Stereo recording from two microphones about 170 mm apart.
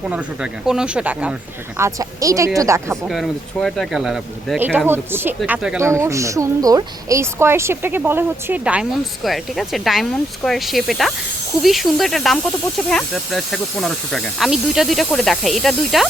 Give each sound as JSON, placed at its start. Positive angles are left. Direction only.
{"t": 0.6, "sound": "speech", "side_deg": -5}
{"t": 1.8, "sound": "speech", "side_deg": -20}
{"t": 3.1, "sound": "speech", "side_deg": 0}